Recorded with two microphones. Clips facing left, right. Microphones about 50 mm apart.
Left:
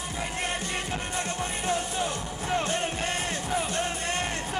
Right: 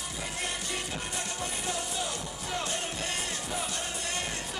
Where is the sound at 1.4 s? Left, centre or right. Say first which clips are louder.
Left 6 dB; left.